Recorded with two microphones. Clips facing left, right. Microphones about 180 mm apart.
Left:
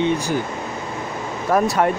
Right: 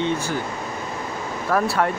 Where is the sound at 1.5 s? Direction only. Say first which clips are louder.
Left 3 dB; 20° left (ahead or behind).